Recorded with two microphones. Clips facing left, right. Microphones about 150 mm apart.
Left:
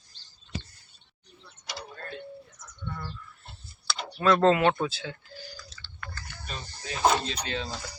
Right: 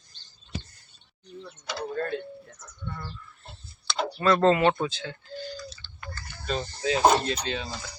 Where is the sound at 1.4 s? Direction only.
60° right (ahead or behind).